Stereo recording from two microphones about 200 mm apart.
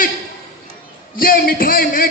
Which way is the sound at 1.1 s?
45° left (ahead or behind).